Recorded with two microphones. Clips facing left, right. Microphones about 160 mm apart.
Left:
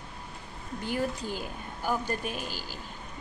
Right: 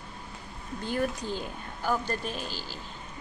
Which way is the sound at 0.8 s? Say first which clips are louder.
Right 1 dB; 15° left (ahead or behind).